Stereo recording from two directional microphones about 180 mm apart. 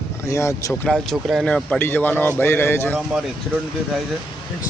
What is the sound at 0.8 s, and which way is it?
A man's voice, centre (ahead or behind).